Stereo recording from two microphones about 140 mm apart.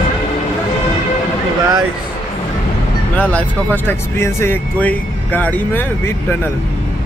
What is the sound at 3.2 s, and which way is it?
Speech, 10° left (ahead or behind).